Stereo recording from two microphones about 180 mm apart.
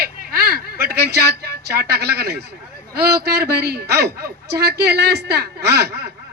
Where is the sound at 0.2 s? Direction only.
55° right (ahead or behind).